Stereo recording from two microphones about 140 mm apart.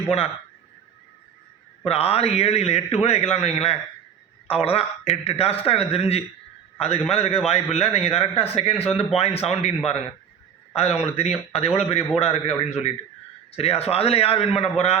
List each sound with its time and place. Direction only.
1.8 s a man's voice: 45° left (ahead or behind)